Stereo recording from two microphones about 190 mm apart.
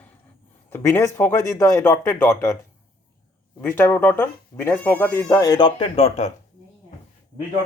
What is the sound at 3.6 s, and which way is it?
Speech, 15° left (ahead or behind).